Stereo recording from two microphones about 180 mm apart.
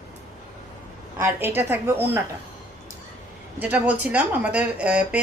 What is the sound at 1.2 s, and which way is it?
Speech, 10° right (ahead or behind).